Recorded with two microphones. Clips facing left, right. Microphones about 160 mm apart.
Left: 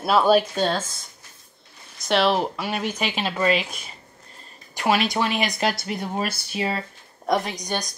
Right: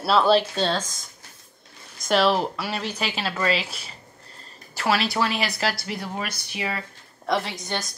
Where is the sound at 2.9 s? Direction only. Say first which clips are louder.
Left 2 dB; 15° left (ahead or behind).